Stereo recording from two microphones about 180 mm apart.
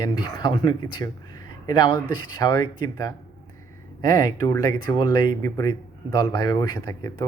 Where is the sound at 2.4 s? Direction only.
20° left (ahead or behind).